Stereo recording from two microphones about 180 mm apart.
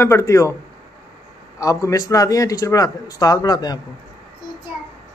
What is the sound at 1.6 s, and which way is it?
A man's voice, 20° left (ahead or behind).